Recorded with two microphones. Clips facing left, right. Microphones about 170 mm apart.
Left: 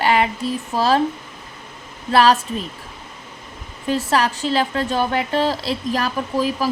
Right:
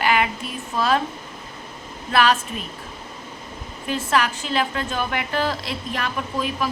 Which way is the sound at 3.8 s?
35° left (ahead or behind).